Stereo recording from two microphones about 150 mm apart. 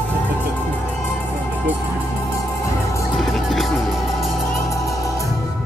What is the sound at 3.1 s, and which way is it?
Music, centre (ahead or behind).